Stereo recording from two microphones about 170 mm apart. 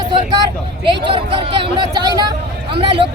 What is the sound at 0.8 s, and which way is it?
Speech, 30° right (ahead or behind).